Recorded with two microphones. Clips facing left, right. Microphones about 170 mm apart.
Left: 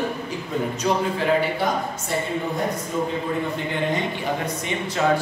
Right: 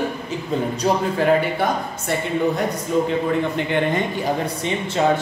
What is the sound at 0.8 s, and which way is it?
Speech, 40° right (ahead or behind).